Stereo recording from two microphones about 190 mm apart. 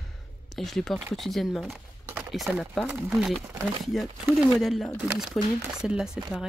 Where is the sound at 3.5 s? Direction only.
30° right (ahead or behind).